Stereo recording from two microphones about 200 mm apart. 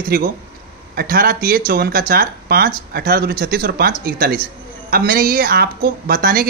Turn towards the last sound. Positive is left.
turn(degrees=-45)  # may be behind; listen again after turning